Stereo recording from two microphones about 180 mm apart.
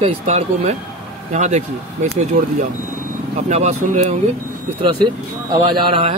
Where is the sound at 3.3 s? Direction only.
40° right (ahead or behind).